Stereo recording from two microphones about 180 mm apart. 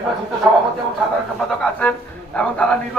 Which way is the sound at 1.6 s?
5° left (ahead or behind).